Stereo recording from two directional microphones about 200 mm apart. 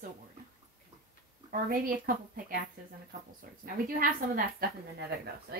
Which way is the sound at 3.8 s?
45° right (ahead or behind).